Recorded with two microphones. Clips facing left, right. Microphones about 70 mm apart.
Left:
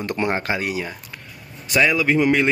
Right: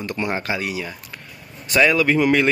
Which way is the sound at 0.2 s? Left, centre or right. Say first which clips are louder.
Left 1 dB; left.